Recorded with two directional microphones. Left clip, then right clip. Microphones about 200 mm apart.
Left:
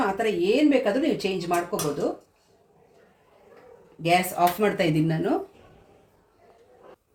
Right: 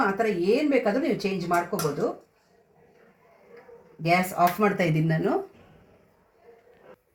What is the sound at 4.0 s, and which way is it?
Speech, 5° right (ahead or behind).